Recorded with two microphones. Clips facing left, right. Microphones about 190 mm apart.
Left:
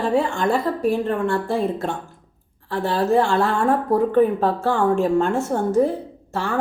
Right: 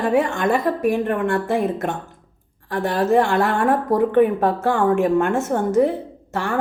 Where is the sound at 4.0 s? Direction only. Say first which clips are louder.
Right 2 dB; 65° right (ahead or behind).